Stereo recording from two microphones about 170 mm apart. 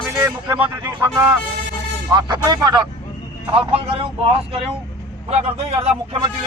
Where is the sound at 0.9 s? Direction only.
25° right (ahead or behind).